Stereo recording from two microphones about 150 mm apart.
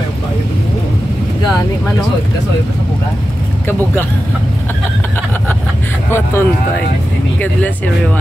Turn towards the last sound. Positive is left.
turn(degrees=15)  # may be behind; listen again after turning